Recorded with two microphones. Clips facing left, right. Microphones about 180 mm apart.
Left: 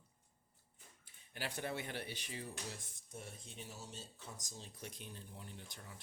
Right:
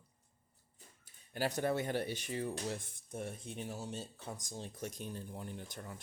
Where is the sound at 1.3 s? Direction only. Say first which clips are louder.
Right 9 dB; 40° right (ahead or behind).